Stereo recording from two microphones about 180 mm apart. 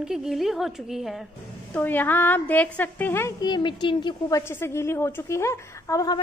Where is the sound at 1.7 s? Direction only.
10° left (ahead or behind).